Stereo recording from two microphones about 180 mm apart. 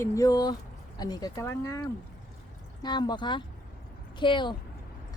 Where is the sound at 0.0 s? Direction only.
15° left (ahead or behind).